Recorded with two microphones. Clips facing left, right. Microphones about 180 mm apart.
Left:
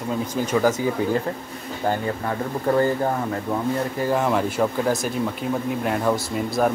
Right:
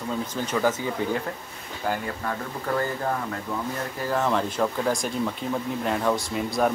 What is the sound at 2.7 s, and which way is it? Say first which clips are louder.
Speech: left 7 dB; 30° left (ahead or behind).